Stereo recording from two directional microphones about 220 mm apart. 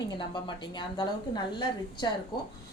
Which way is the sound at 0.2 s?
20° left (ahead or behind).